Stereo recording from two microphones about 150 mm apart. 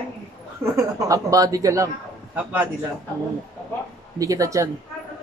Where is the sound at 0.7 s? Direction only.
20° right (ahead or behind).